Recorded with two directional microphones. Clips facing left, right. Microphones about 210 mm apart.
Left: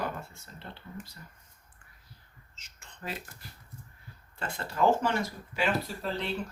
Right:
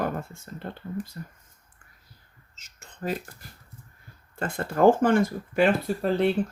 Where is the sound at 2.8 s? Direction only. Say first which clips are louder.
Right 9 dB; 45° right (ahead or behind).